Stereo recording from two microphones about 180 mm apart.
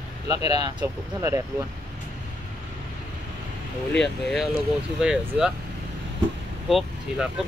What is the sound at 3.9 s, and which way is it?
Speech, centre (ahead or behind).